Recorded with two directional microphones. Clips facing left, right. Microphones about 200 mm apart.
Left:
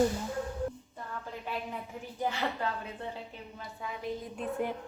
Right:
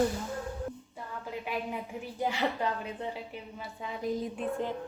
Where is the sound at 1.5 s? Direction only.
10° right (ahead or behind).